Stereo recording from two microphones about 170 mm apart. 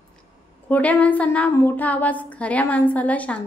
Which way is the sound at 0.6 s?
10° left (ahead or behind).